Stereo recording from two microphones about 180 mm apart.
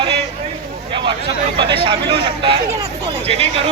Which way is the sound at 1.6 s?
30° right (ahead or behind).